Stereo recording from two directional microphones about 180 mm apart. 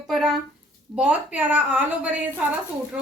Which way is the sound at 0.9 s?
5° right (ahead or behind).